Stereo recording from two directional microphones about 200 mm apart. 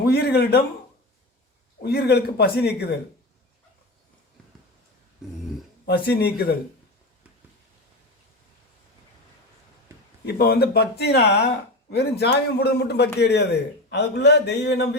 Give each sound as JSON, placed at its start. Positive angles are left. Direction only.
{"t": 0.0, "sound": "a man's voice", "side_deg": 55}
{"t": 1.8, "sound": "a man's voice", "side_deg": 55}
{"t": 6.1, "sound": "speech", "side_deg": 55}
{"t": 10.2, "sound": "a man's voice", "side_deg": 50}